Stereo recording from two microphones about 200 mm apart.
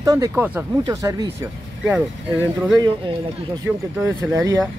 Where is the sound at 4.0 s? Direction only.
10° right (ahead or behind).